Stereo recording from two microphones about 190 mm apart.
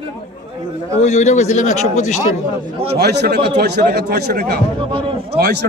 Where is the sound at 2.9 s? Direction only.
60° right (ahead or behind).